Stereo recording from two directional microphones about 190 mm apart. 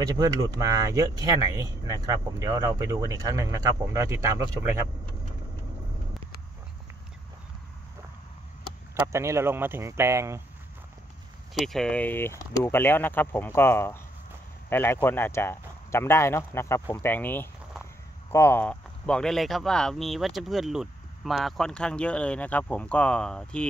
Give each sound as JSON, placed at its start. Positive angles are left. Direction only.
{"t": 0.0, "sound": "speech", "side_deg": -20}
{"t": 9.0, "sound": "speech", "side_deg": -15}
{"t": 11.5, "sound": "speech", "side_deg": 0}